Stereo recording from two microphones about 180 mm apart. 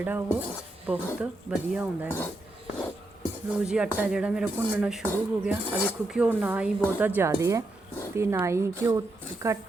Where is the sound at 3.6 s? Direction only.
5° right (ahead or behind).